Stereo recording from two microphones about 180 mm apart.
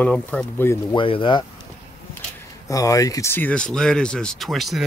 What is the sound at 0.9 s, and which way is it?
Speech, 30° left (ahead or behind).